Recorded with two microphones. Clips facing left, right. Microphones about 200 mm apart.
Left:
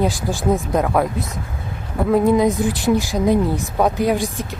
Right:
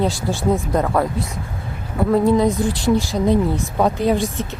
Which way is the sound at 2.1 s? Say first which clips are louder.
Left 1 dB; 10° left (ahead or behind).